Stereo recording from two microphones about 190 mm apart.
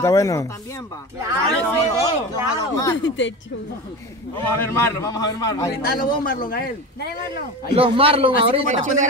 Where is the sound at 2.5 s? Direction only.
15° left (ahead or behind).